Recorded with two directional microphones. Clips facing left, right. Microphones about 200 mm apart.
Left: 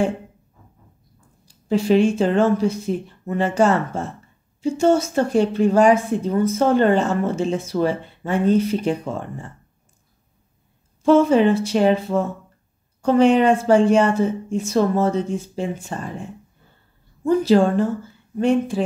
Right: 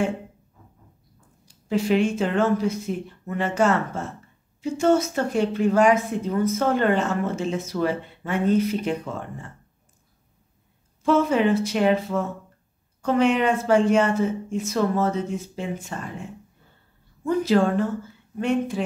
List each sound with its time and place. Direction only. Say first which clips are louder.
1.4 s a woman's voice: left 3 dB; 30° left (ahead or behind)
11.0 s a woman's voice: left 6 dB; 30° left (ahead or behind)
17.2 s a woman's voice: left 4 dB; 30° left (ahead or behind)